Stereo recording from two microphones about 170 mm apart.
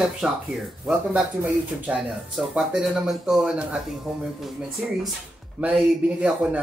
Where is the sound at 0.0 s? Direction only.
Centre (ahead or behind).